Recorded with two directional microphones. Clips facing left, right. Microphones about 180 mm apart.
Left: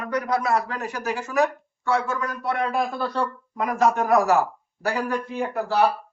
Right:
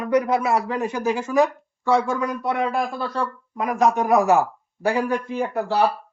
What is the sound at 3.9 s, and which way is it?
A man's voice, 20° right (ahead or behind).